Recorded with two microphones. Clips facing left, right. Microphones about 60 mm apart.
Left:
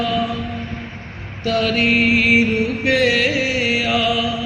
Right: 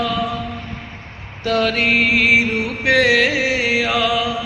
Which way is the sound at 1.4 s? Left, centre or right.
Right.